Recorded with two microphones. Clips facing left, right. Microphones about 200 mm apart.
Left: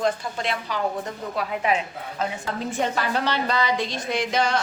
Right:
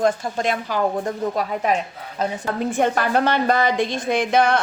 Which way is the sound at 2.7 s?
55° right (ahead or behind).